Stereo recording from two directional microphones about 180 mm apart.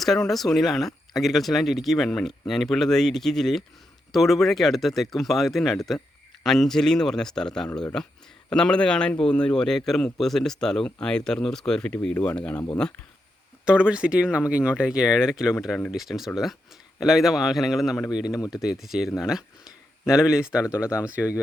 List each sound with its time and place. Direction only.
0.0 s a man's voice: centre (ahead or behind)
13.7 s a man's voice: 5° right (ahead or behind)
18.3 s speech: 20° left (ahead or behind)
18.5 s a man's voice: 5° right (ahead or behind)